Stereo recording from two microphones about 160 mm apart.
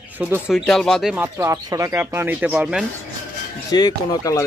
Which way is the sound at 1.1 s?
15° right (ahead or behind).